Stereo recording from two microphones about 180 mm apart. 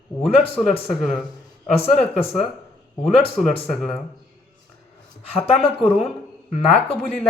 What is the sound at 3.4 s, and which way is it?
Speech, centre (ahead or behind).